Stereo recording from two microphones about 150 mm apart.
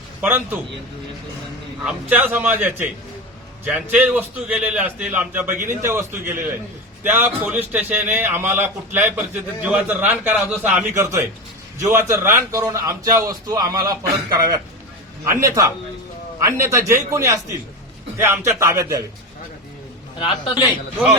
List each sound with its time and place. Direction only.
0.2 s a man's voice: 15° right (ahead or behind)
1.8 s a man's voice: 10° right (ahead or behind)
20.1 s a man's voice: 35° left (ahead or behind)